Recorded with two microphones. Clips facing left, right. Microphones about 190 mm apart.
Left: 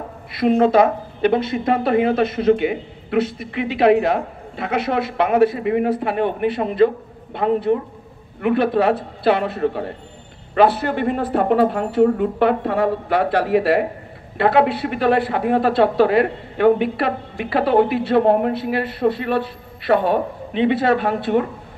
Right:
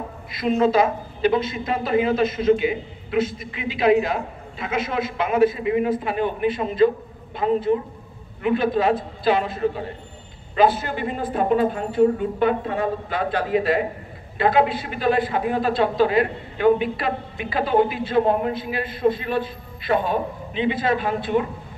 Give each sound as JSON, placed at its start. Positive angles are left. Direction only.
{"t": 0.3, "sound": "a woman's voice", "side_deg": 60}